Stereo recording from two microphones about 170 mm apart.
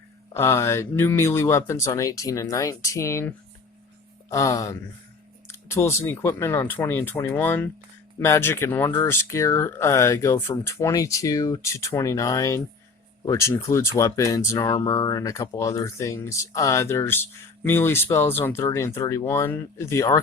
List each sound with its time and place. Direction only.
0.3 s speech: 15° left (ahead or behind)